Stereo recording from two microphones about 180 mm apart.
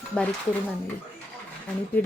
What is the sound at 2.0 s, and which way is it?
Speech, 10° left (ahead or behind).